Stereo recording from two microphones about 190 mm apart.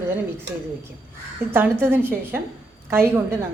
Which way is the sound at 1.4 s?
55° right (ahead or behind).